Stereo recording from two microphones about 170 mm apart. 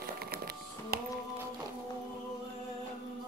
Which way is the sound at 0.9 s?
65° right (ahead or behind).